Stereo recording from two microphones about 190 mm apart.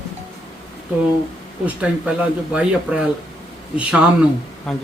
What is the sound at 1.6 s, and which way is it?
A man's voice, 5° right (ahead or behind).